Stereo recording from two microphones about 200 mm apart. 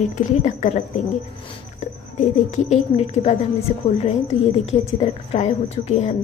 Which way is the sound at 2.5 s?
35° left (ahead or behind).